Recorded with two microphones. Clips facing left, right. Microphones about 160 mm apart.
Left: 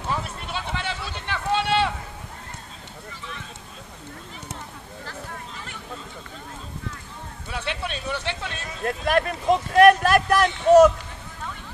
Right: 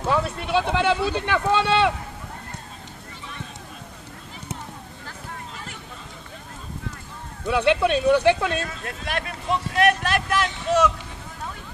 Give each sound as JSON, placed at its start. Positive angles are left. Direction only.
{"t": 0.0, "sound": "a sound", "side_deg": -65}
{"t": 7.4, "sound": "speech", "side_deg": -65}
{"t": 8.8, "sound": "speech", "side_deg": 45}